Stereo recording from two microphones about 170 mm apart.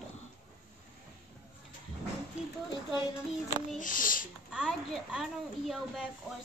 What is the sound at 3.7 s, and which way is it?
Speech, 50° left (ahead or behind).